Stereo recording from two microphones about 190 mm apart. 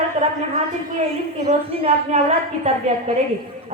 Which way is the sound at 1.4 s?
35° right (ahead or behind).